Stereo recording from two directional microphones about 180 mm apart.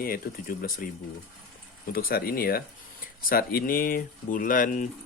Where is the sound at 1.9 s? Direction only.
55° left (ahead or behind).